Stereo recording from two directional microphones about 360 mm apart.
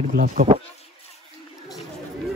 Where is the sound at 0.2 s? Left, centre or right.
Right.